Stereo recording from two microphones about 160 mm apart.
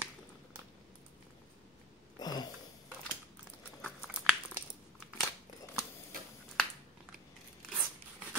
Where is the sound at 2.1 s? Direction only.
25° left (ahead or behind).